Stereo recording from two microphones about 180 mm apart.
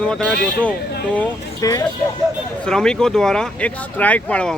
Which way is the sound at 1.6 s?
20° left (ahead or behind).